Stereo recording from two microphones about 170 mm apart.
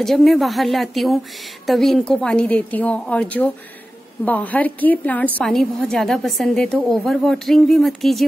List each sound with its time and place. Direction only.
0.0 s a woman's voice: centre (ahead or behind)